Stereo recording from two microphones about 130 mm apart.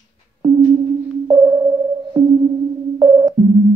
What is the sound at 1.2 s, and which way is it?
Sonar, 35° right (ahead or behind).